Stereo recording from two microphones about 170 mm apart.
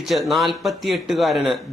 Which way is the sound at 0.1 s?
Centre (ahead or behind).